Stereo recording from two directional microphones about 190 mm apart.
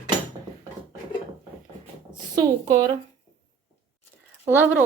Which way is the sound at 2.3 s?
20° right (ahead or behind).